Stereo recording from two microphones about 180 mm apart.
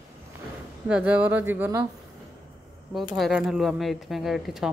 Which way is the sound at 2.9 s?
Centre (ahead or behind).